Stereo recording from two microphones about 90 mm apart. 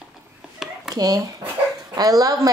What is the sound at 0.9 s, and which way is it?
A woman's voice, 40° right (ahead or behind).